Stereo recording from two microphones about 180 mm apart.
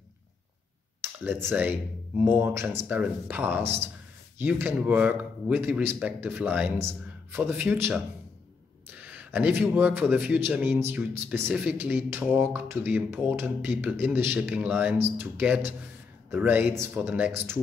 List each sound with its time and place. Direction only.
1.2 s a man's voice: 10° right (ahead or behind)